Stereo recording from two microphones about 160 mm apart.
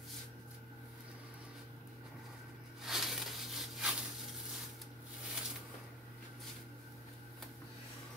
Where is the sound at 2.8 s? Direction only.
Centre (ahead or behind).